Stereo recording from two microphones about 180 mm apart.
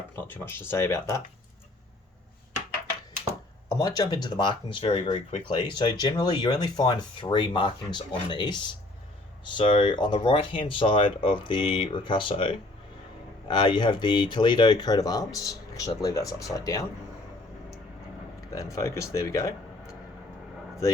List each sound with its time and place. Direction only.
0.2 s speech: 10° left (ahead or behind)
3.9 s speech: 20° left (ahead or behind)
18.3 s speech: 20° left (ahead or behind)